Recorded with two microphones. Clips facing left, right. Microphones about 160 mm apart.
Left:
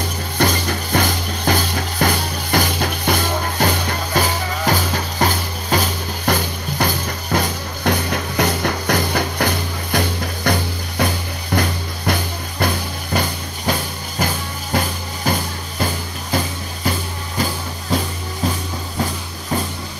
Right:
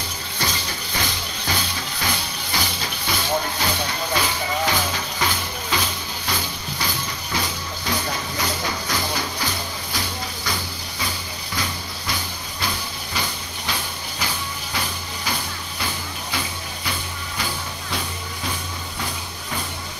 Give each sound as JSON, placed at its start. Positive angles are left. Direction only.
{"t": 0.4, "sound": "music", "side_deg": 55}
{"t": 13.7, "sound": "a sound", "side_deg": 45}
{"t": 15.8, "sound": "music", "side_deg": 45}